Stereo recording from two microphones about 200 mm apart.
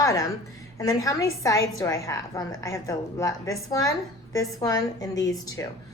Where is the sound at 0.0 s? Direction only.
15° left (ahead or behind).